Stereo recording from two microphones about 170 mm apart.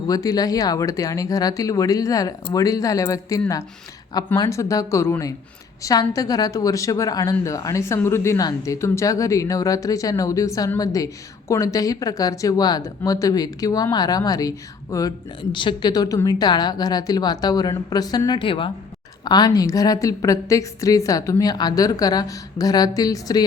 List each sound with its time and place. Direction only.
0.1 s a woman's voice: 20° left (ahead or behind)